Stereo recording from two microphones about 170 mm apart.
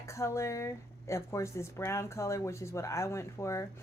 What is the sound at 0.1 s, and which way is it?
Speech, 15° left (ahead or behind).